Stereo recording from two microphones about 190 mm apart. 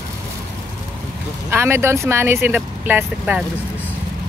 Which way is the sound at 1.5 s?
15° right (ahead or behind).